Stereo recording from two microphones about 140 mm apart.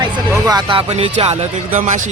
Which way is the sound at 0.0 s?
30° right (ahead or behind).